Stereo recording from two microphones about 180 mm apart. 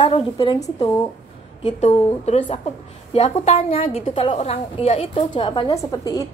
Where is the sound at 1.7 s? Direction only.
40° left (ahead or behind).